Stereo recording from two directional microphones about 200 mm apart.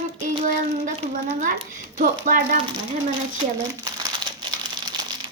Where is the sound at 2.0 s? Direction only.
45° right (ahead or behind).